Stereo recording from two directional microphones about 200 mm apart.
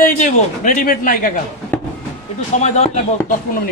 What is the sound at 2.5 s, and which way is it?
Speech, 35° left (ahead or behind).